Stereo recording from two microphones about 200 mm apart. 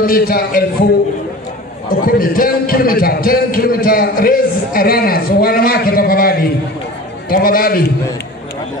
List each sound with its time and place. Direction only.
0.0 s a man's voice: 45° left (ahead or behind)
2.0 s a man's voice: 45° left (ahead or behind)